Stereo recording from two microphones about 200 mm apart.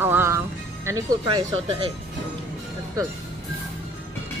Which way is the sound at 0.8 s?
20° right (ahead or behind).